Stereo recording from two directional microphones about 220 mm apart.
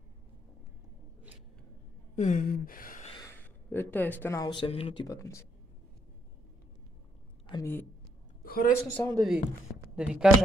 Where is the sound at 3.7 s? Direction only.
10° left (ahead or behind).